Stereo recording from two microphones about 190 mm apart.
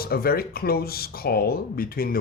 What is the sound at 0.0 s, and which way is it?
Speech, 55° left (ahead or behind).